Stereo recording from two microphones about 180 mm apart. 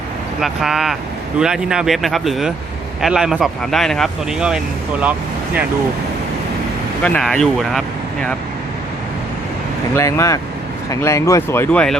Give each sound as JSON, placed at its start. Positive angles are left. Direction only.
{"t": 0.4, "sound": "speech", "side_deg": 0}
{"t": 7.0, "sound": "speech", "side_deg": 5}
{"t": 9.9, "sound": "speech", "side_deg": 15}